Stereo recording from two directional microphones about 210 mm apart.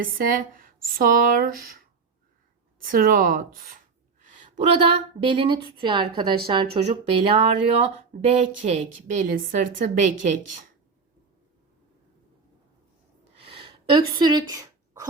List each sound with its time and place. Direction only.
0.0 s speech: 40° right (ahead or behind)
4.5 s a woman's voice: 25° right (ahead or behind)
13.3 s a sound: 25° right (ahead or behind)